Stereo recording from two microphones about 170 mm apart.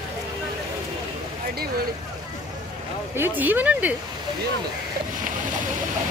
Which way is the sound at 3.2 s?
10° right (ahead or behind).